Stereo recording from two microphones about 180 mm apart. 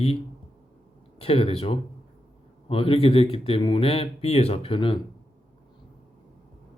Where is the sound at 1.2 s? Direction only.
30° left (ahead or behind).